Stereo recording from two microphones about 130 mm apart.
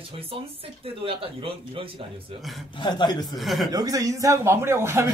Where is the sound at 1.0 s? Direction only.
45° right (ahead or behind).